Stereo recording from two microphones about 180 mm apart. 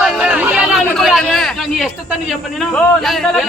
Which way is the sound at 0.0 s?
5° right (ahead or behind).